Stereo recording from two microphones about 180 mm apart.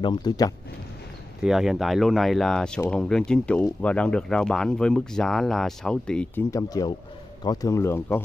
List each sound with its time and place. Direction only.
0.0 s speech: 25° left (ahead or behind)
1.4 s speech: centre (ahead or behind)
6.5 s speech: 20° left (ahead or behind)